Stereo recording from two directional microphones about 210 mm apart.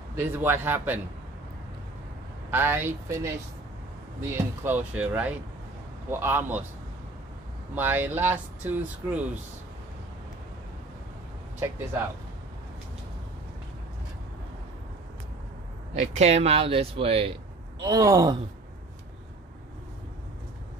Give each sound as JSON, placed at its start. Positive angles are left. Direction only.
{"t": 0.1, "sound": "speech", "side_deg": -10}
{"t": 2.5, "sound": "speech", "side_deg": -10}
{"t": 7.7, "sound": "speech", "side_deg": -10}
{"t": 15.9, "sound": "speech", "side_deg": -30}
{"t": 17.8, "sound": "speech", "side_deg": -15}